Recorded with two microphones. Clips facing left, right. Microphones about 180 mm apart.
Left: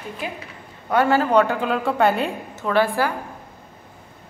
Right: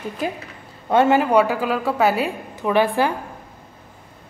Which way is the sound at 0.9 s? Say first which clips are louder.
Right 2 dB; 20° right (ahead or behind).